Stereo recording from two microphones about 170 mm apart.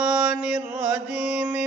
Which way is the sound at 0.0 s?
5° right (ahead or behind).